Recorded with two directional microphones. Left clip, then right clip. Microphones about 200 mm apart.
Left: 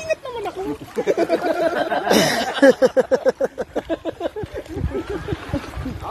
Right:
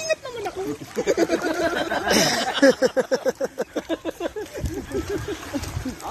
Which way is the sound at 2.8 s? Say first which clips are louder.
Left 5 dB; 10° left (ahead or behind).